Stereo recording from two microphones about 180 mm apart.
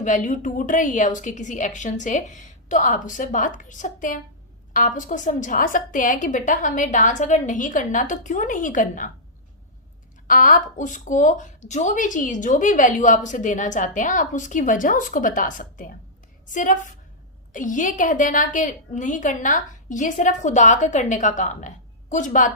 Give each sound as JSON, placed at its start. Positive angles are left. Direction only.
{"t": 0.0, "sound": "a woman's voice", "side_deg": 45}
{"t": 10.2, "sound": "a woman's voice", "side_deg": 50}